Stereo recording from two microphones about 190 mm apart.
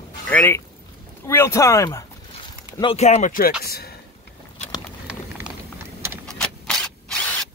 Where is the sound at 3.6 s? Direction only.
55° left (ahead or behind).